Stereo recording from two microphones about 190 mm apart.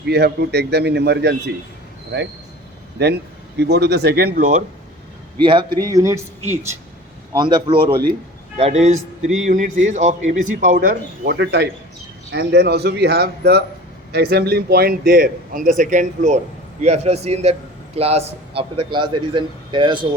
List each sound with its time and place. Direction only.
0.0 s a man's voice: 60° right (ahead or behind); by 4.6 s 45° right (ahead or behind)
5.4 s speech: 25° right (ahead or behind)
7.3 s a man's voice: 25° right (ahead or behind)